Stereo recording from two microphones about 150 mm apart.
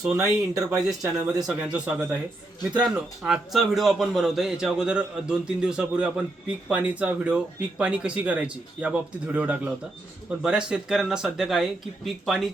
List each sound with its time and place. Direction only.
0.2 s speech: 20° right (ahead or behind)
1.5 s a man's voice: 5° right (ahead or behind)